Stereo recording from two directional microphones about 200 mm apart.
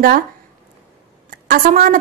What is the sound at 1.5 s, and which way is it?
Speech, 45° right (ahead or behind).